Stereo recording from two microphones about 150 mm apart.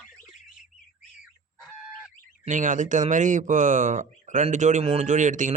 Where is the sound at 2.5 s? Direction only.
55° right (ahead or behind).